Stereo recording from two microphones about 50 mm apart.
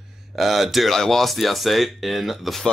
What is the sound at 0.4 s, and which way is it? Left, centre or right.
Speech, centre.